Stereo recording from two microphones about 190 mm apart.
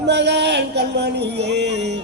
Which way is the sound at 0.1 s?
65° right (ahead or behind).